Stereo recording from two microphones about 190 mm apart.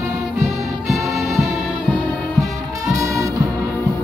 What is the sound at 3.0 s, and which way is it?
Music, 15° right (ahead or behind).